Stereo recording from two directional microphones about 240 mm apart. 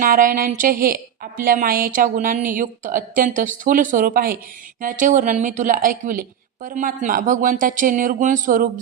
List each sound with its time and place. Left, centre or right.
0.0 s a woman's voice: right